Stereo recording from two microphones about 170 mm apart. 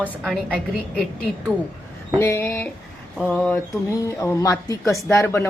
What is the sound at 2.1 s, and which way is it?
Speech, 15° left (ahead or behind).